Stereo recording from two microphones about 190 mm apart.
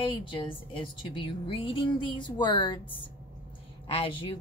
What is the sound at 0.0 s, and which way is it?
A woman's voice, 25° left (ahead or behind).